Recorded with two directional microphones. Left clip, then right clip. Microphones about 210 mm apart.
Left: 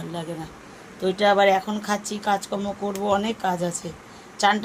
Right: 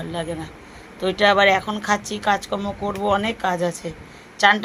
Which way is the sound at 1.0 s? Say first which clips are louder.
Right 2 dB; 20° right (ahead or behind).